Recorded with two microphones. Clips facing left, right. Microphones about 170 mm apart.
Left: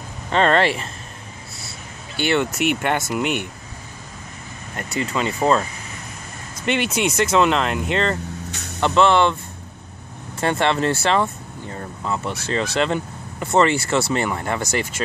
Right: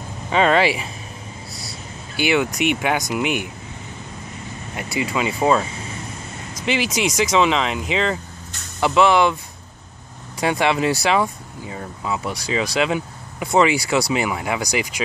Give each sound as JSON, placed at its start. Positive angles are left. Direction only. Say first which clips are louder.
{"t": 0.3, "sound": "speech", "louder": "right 1 dB", "side_deg": -5}
{"t": 2.1, "sound": "speech", "louder": "right 1 dB", "side_deg": -5}
{"t": 5.0, "sound": "speech", "louder": "right 1 dB", "side_deg": -5}
{"t": 10.4, "sound": "speech", "louder": "right 1 dB", "side_deg": -10}